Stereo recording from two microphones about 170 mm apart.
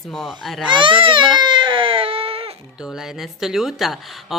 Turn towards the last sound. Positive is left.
turn(degrees=0)  # may be behind; listen again after turning